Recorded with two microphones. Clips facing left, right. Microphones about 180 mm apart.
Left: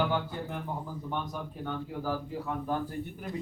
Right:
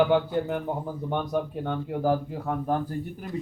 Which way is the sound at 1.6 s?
65° right (ahead or behind).